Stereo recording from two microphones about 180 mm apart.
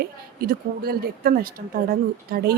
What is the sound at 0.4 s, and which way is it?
Speech, 55° right (ahead or behind).